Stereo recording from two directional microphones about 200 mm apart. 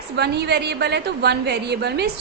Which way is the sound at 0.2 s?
55° right (ahead or behind).